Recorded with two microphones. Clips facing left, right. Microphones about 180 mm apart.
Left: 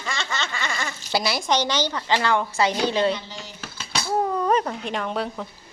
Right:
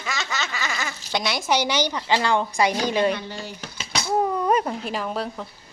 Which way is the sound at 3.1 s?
55° right (ahead or behind).